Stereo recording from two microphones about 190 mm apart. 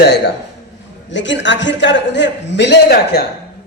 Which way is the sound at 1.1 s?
70° left (ahead or behind).